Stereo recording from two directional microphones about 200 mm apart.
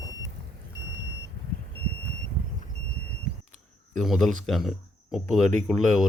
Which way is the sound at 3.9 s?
Centre (ahead or behind).